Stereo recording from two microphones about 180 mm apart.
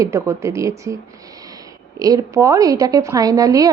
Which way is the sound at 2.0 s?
20° right (ahead or behind).